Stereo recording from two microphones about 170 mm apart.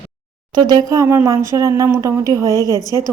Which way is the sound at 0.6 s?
25° right (ahead or behind).